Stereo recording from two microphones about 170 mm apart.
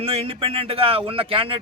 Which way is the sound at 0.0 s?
35° right (ahead or behind).